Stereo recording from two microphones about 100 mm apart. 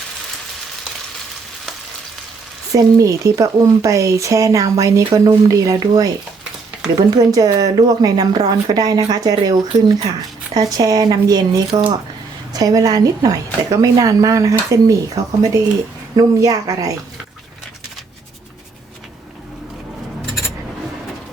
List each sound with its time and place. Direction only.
2.7 s speech: 35° right (ahead or behind)
7.2 s speech: 40° right (ahead or behind)